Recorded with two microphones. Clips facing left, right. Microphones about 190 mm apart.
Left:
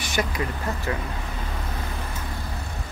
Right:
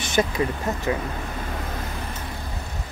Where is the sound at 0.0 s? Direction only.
25° right (ahead or behind).